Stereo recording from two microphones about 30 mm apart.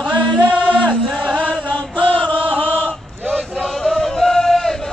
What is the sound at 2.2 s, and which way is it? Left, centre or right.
Chant, left.